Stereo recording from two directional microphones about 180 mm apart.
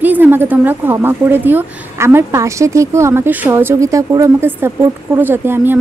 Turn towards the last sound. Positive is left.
turn(degrees=-10)  # may be behind; listen again after turning